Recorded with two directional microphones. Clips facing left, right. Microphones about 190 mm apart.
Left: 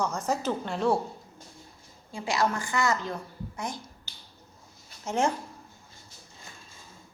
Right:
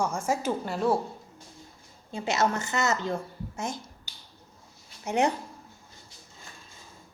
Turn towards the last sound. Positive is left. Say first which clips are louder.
# right 2 dB
turn(degrees=-15)  # may be behind; listen again after turning